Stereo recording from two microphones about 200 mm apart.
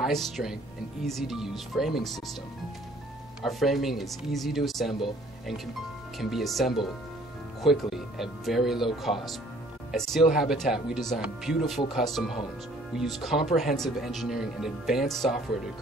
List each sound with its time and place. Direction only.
0.0 s speech: centre (ahead or behind)
3.4 s speech: centre (ahead or behind)
6.1 s speech: centre (ahead or behind)